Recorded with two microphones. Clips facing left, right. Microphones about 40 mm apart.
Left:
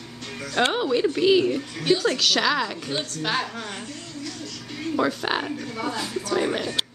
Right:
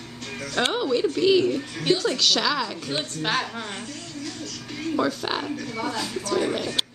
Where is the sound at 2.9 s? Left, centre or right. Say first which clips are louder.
Even; centre.